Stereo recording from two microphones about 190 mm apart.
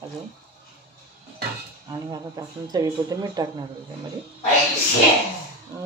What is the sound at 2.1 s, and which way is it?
Speech, 20° right (ahead or behind).